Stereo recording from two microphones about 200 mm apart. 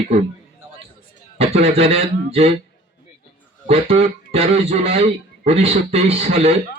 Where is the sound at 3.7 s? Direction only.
30° right (ahead or behind).